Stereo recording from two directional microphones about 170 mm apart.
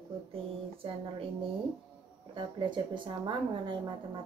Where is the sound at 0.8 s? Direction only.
30° right (ahead or behind).